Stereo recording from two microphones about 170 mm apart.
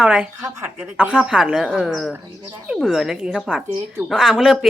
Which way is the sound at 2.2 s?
25° right (ahead or behind).